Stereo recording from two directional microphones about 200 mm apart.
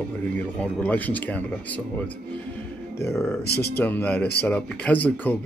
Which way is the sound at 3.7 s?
10° left (ahead or behind).